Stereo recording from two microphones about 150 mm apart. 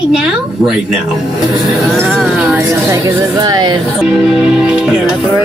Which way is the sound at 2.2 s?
10° right (ahead or behind).